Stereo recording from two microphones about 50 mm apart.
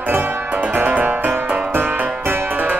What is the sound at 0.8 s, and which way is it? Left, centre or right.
Music, right.